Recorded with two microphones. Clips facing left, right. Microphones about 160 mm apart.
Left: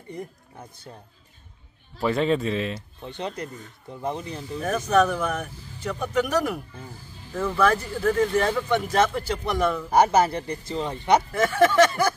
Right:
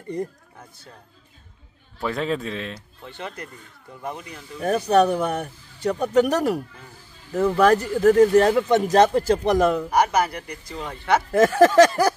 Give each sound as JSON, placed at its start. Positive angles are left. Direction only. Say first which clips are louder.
{"t": 2.0, "sound": "speech", "louder": "left 3 dB", "side_deg": 0}
{"t": 3.0, "sound": "speech", "louder": "left 3 dB", "side_deg": 20}
{"t": 4.6, "sound": "speech", "louder": "right 3 dB", "side_deg": -35}
{"t": 9.8, "sound": "speech", "louder": "left 2 dB", "side_deg": 25}
{"t": 11.5, "sound": "speech", "louder": "right 3 dB", "side_deg": -40}